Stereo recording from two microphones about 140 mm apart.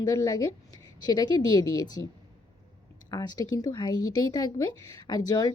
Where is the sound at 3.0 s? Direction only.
30° left (ahead or behind).